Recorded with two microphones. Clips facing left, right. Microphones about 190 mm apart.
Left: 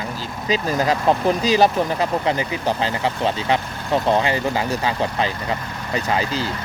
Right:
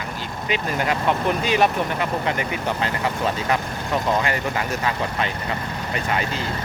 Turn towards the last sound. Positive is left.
turn(degrees=30)  # may be behind; listen again after turning